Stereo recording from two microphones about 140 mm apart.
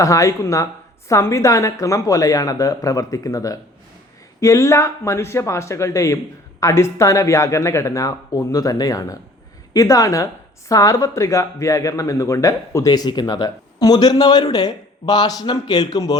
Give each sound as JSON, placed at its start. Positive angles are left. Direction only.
{"t": 0.0, "sound": "speech", "side_deg": 25}